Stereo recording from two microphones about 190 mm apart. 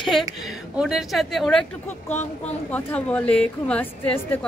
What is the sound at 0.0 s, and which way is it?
A woman's voice, centre (ahead or behind).